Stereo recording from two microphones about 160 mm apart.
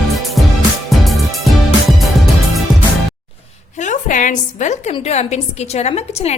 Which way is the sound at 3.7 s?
50° left (ahead or behind).